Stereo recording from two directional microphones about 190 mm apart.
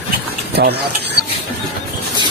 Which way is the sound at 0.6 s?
55° right (ahead or behind).